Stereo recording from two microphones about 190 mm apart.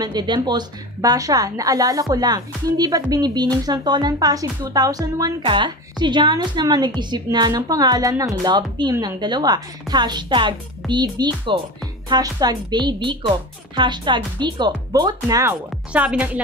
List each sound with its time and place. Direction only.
0.0 s speech: 20° right (ahead or behind)
15.9 s speech: 5° right (ahead or behind)